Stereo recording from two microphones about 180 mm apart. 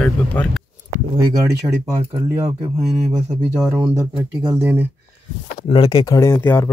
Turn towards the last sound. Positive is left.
turn(degrees=15)  # may be behind; listen again after turning